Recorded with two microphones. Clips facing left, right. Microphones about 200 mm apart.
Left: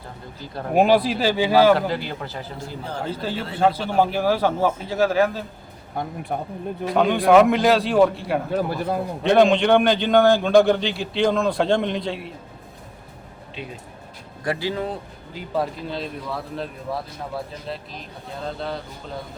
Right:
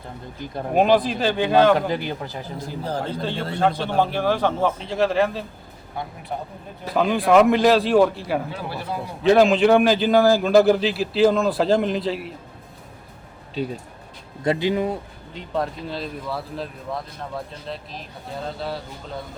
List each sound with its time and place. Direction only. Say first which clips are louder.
0.7 s a man's voice: left 1 dB; 10° left (ahead or behind)
1.9 s speech: right 1 dB; 15° right (ahead or behind)
3.1 s a man's voice: right 1 dB; 5° left (ahead or behind)
6.8 s a man's voice: left 2 dB; centre (ahead or behind)
8.4 s speech: left 7 dB; 50° left (ahead or behind)
9.2 s a man's voice: right 1 dB; centre (ahead or behind)
14.4 s speech: right 4 dB; 20° right (ahead or behind)
15.3 s a man's voice: left 1 dB; 5° left (ahead or behind)